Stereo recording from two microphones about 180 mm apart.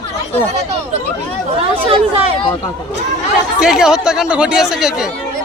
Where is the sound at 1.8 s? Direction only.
30° right (ahead or behind).